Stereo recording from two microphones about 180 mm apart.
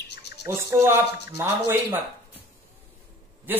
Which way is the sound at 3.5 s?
10° right (ahead or behind).